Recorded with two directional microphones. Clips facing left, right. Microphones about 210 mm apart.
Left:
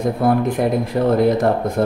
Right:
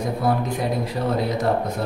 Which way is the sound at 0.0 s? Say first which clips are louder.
Left 6 dB; 55° left (ahead or behind).